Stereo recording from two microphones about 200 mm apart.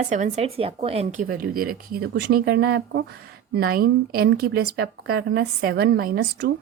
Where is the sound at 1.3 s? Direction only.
45° right (ahead or behind).